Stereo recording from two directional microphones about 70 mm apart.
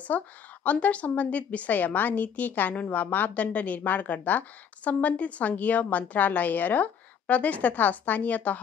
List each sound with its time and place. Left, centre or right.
0.1 s a woman's voice: left